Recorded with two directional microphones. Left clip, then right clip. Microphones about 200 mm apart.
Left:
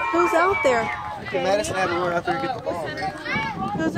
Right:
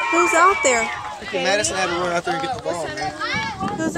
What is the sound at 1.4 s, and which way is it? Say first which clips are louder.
Speech: right 2 dB; 45° left (ahead or behind).